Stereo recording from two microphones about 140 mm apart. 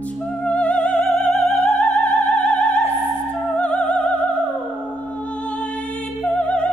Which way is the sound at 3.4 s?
5° left (ahead or behind).